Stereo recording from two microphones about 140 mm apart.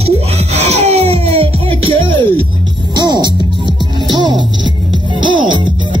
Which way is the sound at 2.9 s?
30° right (ahead or behind).